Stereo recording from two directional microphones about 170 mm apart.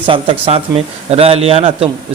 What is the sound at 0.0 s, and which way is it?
Speech, 30° right (ahead or behind).